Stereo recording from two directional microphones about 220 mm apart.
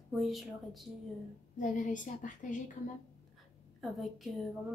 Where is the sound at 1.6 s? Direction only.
35° left (ahead or behind).